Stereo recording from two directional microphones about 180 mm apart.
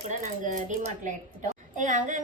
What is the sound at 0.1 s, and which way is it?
A woman's voice, 45° right (ahead or behind).